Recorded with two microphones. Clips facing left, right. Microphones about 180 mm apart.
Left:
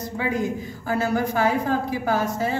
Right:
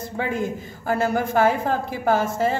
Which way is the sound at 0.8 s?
50° right (ahead or behind).